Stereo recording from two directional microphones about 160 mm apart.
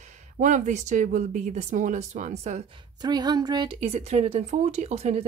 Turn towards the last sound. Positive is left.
turn(degrees=-40)  # may be behind; listen again after turning